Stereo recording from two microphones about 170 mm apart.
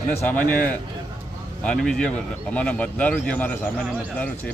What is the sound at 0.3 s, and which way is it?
Speech, 10° left (ahead or behind).